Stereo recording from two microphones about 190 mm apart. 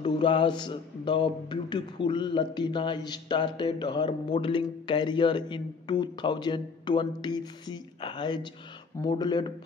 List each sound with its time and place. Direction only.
0.0 s a man's voice: 25° left (ahead or behind)